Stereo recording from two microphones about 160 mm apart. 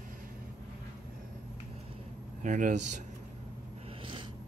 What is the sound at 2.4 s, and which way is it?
Speech, 55° right (ahead or behind).